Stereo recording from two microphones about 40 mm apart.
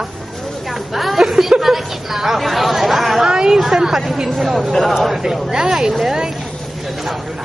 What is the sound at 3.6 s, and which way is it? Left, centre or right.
Speech, centre.